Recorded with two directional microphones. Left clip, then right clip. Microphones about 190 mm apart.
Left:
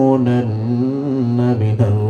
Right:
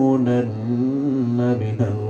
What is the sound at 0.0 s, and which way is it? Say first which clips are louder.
Mantra: left 4 dB; 20° right (ahead or behind).